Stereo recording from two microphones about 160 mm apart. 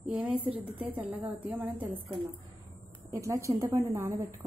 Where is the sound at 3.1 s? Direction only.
20° right (ahead or behind).